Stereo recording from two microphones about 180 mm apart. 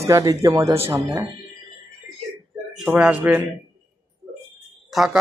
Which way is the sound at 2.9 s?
5° right (ahead or behind).